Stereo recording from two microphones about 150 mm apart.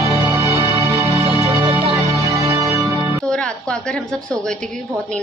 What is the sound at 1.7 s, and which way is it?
Music, 40° right (ahead or behind).